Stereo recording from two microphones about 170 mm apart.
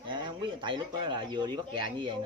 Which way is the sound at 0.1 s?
30° right (ahead or behind).